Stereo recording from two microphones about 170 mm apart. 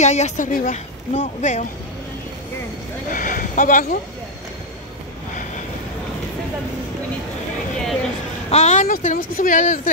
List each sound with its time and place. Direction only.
0.0 s speech: 40° left (ahead or behind)
3.1 s a sound: 50° left (ahead or behind)
8.5 s speech: 40° left (ahead or behind)